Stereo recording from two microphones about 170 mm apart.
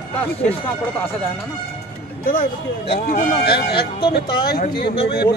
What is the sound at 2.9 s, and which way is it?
A man's voice, 70° left (ahead or behind).